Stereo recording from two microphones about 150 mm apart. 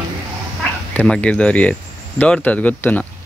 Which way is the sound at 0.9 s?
5° left (ahead or behind).